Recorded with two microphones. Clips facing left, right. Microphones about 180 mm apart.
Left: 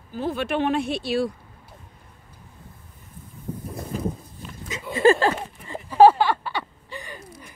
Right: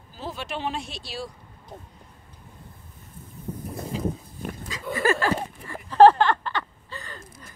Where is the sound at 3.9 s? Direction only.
50° left (ahead or behind).